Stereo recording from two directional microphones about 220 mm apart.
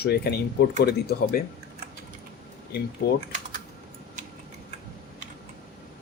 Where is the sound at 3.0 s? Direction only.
50° left (ahead or behind).